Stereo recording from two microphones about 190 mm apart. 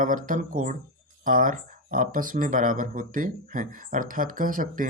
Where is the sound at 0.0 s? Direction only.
45° right (ahead or behind).